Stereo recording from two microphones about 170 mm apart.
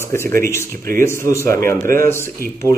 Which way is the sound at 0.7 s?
55° right (ahead or behind).